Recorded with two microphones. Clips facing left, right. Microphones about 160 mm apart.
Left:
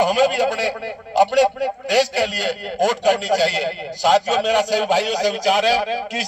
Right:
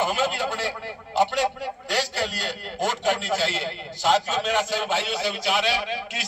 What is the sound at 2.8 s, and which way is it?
A man's voice, 40° left (ahead or behind).